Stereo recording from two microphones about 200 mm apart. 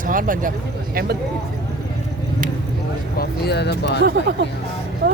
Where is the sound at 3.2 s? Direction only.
55° left (ahead or behind).